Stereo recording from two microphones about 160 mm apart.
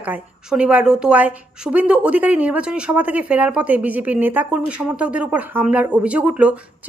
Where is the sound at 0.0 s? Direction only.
10° right (ahead or behind).